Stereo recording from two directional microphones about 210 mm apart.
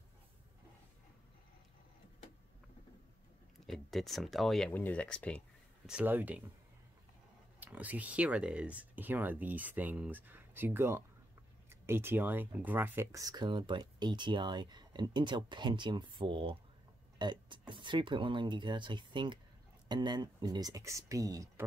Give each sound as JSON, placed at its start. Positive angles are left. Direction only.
{"t": 3.6, "sound": "speech", "side_deg": 0}
{"t": 5.9, "sound": "speech", "side_deg": -5}
{"t": 7.6, "sound": "speech", "side_deg": -5}